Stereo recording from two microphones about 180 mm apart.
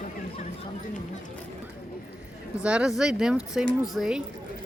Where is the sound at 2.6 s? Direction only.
5° right (ahead or behind).